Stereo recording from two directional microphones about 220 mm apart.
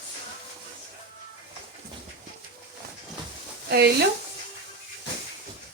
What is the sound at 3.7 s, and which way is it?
Speech, 45° right (ahead or behind).